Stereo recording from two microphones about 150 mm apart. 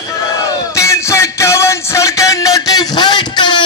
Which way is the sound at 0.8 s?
20° left (ahead or behind).